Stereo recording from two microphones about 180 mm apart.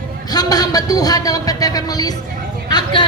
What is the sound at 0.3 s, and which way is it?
Speech, 20° left (ahead or behind).